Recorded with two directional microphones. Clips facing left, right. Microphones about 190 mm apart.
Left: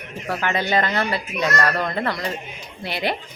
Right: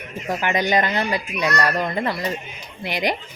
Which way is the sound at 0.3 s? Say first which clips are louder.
Right 2 dB; 15° right (ahead or behind).